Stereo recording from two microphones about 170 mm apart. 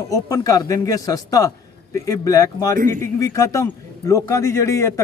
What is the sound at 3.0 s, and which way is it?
A man's voice, 15° left (ahead or behind).